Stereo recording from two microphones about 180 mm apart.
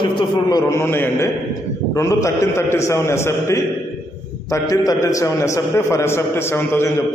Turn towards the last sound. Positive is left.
turn(degrees=15)  # may be behind; listen again after turning